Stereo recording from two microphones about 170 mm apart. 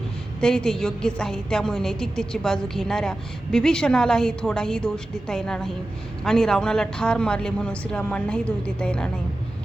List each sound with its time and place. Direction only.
0.3 s a woman's voice: 5° left (ahead or behind)